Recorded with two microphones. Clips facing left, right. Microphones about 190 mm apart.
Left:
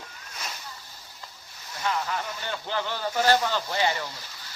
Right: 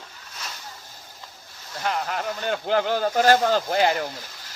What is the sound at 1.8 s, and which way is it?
Speech, 50° right (ahead or behind).